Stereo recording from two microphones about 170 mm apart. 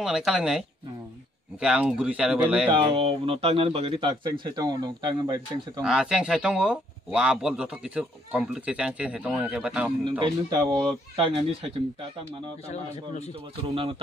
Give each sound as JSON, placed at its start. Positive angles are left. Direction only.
{"t": 0.0, "sound": "speech", "side_deg": -5}
{"t": 2.7, "sound": "speech", "side_deg": -30}
{"t": 5.9, "sound": "speech", "side_deg": -5}
{"t": 10.0, "sound": "speech", "side_deg": -25}
{"t": 11.1, "sound": "speech", "side_deg": -35}
{"t": 12.6, "sound": "a man's voice", "side_deg": 40}
{"t": 13.7, "sound": "speech", "side_deg": -35}